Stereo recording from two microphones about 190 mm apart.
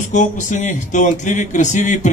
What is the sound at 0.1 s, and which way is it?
Speech, 40° left (ahead or behind).